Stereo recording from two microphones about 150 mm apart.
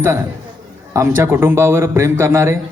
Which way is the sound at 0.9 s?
15° right (ahead or behind).